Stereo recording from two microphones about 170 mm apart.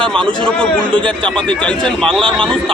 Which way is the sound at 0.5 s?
5° left (ahead or behind).